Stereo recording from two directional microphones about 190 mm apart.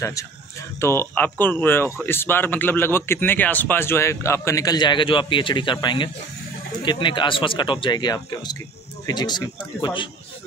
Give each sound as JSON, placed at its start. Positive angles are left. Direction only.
{"t": 0.7, "sound": "speech", "side_deg": 15}